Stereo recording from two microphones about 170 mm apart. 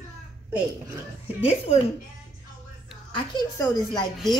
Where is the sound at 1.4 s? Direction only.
40° left (ahead or behind).